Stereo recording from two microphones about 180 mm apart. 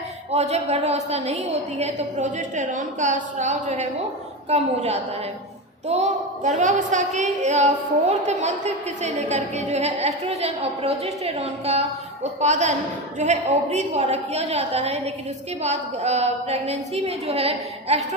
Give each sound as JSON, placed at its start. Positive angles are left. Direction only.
{"t": 0.3, "sound": "a woman's voice", "side_deg": -35}